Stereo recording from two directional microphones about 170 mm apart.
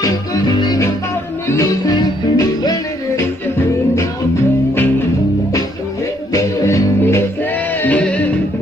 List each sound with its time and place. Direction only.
0.0 s music: 20° left (ahead or behind)
6.3 s music: 20° left (ahead or behind)